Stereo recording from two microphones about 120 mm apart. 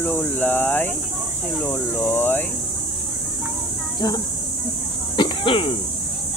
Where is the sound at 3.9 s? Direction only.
35° left (ahead or behind).